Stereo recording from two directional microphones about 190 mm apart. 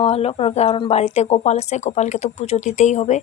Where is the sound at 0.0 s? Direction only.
30° left (ahead or behind).